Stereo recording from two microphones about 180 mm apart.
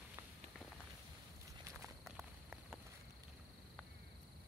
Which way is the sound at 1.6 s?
15° right (ahead or behind).